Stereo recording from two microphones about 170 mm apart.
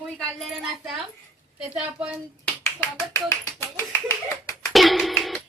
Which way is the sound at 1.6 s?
5° right (ahead or behind).